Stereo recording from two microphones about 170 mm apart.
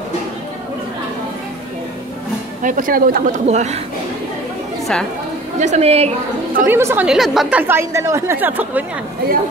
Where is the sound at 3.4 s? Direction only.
40° right (ahead or behind).